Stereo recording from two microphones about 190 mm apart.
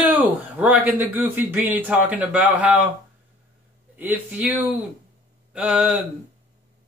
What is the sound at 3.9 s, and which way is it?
A man's voice, 10° right (ahead or behind).